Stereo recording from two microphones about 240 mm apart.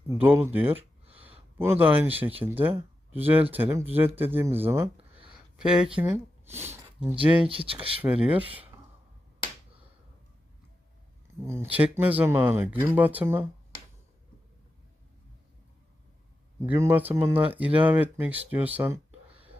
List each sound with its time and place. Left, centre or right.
0.1 s speech: centre
5.1 s a sound: right
5.5 s speech: centre
7.0 s speech: right
8.0 s speech: centre
11.4 s speech: centre
16.6 s speech: centre